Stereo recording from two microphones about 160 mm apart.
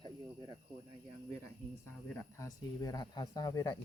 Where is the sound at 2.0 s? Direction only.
15° left (ahead or behind).